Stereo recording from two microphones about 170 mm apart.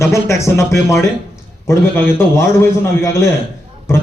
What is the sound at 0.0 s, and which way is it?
A man's voice, 15° left (ahead or behind).